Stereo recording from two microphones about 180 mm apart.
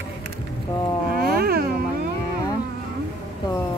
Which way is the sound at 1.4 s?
55° right (ahead or behind).